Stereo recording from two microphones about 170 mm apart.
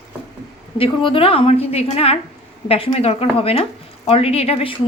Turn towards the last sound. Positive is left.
turn(degrees=35)  # may be behind; listen again after turning